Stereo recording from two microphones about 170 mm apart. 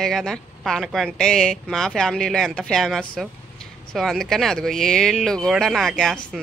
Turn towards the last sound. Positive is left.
turn(degrees=0)  # may be behind; listen again after turning